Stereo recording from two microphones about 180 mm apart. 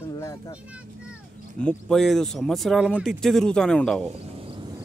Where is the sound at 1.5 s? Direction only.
5° left (ahead or behind).